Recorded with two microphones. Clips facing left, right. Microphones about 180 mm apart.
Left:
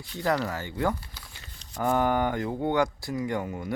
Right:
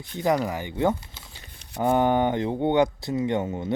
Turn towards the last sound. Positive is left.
turn(degrees=-25)  # may be behind; listen again after turning